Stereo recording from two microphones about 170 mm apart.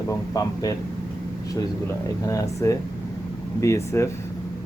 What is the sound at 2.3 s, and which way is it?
Speech, 20° left (ahead or behind).